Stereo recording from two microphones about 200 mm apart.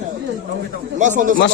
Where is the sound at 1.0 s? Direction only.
40° right (ahead or behind).